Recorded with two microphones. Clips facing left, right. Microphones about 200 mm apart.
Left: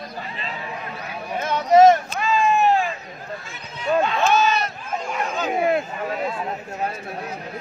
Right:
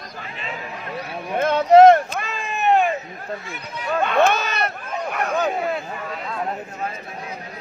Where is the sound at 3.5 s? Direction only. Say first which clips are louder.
Left 5 dB; 60° right (ahead or behind).